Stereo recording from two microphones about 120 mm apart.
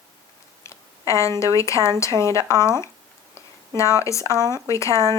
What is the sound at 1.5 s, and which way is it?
Speech, 25° left (ahead or behind).